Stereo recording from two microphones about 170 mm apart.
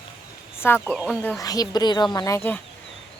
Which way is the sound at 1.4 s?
20° left (ahead or behind).